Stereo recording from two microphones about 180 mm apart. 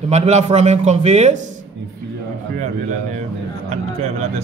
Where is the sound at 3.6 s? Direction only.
35° right (ahead or behind).